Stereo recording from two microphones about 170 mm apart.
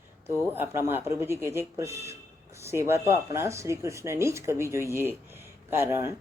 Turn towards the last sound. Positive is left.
turn(degrees=-15)  # may be behind; listen again after turning